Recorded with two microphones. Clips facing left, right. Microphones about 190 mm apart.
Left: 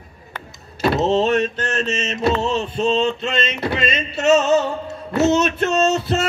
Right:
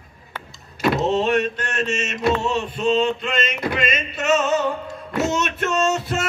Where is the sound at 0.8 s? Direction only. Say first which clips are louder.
Left 2 dB; 30° left (ahead or behind).